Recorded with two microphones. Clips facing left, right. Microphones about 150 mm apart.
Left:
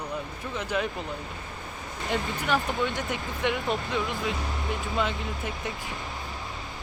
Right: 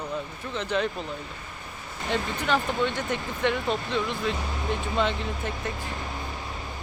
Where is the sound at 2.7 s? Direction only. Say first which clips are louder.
Right 2 dB; 15° left (ahead or behind).